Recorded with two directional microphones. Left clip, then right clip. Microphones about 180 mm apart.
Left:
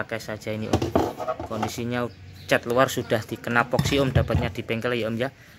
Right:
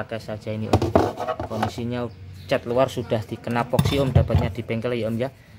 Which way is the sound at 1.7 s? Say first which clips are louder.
Left 1 dB; centre (ahead or behind).